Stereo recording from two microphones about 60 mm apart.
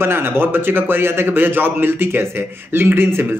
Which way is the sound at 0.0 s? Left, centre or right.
Right.